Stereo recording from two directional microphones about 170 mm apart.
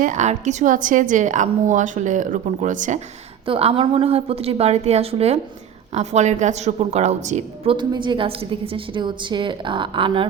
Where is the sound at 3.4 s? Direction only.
35° right (ahead or behind).